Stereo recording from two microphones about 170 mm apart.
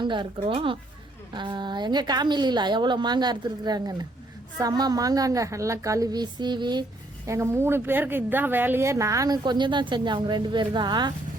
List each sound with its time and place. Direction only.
0.0 s a woman's voice: 25° right (ahead or behind)
7.3 s a woman's voice: 15° right (ahead or behind)